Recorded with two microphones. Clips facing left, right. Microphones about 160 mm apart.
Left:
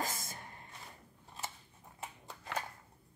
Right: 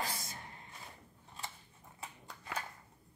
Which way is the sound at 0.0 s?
50° left (ahead or behind).